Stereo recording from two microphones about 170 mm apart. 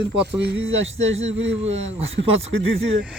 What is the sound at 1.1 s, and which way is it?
Speech, 40° right (ahead or behind).